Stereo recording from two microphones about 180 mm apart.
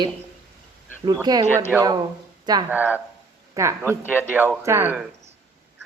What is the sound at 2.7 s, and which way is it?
A man's voice, 10° right (ahead or behind).